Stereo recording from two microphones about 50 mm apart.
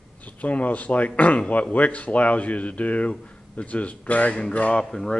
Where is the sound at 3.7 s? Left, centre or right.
Left.